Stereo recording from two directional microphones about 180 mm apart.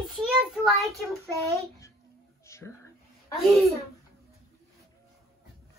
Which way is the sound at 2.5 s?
15° left (ahead or behind).